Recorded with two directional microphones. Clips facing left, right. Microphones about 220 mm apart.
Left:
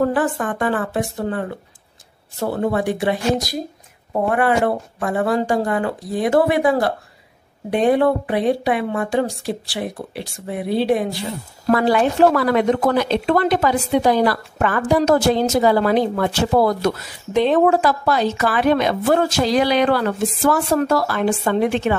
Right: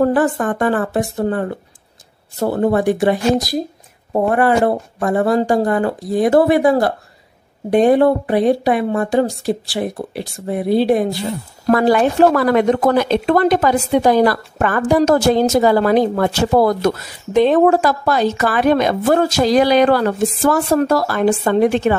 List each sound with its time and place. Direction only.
0.0 s a woman's voice: 40° right (ahead or behind)